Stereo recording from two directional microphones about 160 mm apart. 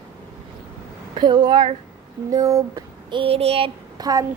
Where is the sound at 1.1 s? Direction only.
25° right (ahead or behind).